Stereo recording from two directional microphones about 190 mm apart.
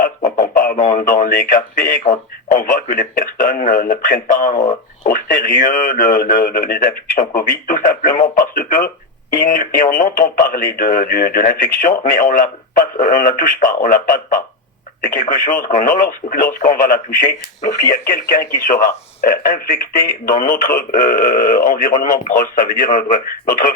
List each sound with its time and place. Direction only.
0.3 s speech: 50° left (ahead or behind)